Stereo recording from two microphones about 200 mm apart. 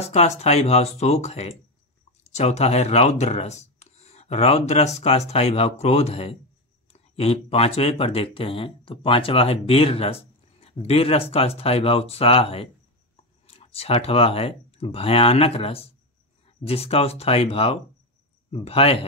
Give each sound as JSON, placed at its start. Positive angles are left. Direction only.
{"t": 0.0, "sound": "speech", "side_deg": 35}